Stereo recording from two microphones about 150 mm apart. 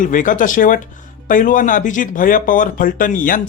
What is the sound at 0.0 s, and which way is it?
Speech, 60° left (ahead or behind).